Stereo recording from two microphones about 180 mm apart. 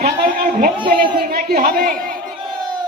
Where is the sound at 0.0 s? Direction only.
50° right (ahead or behind).